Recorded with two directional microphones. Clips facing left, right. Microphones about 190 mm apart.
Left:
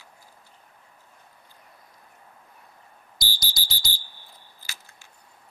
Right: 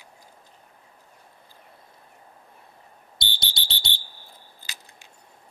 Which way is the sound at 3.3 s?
25° right (ahead or behind).